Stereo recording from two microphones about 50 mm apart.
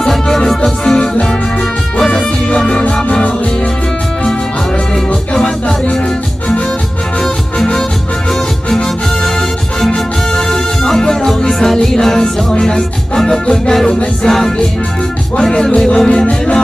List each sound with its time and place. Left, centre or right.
0.1 s music: centre; by 3.3 s left
4.9 s music: centre
15.5 s music: centre